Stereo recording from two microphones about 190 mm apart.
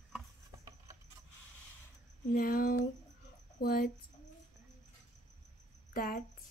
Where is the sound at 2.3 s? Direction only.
45° left (ahead or behind).